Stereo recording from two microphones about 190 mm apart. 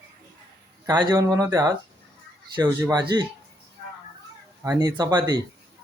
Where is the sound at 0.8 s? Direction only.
20° right (ahead or behind).